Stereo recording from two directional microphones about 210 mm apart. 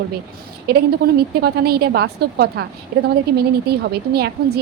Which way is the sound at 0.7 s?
50° right (ahead or behind).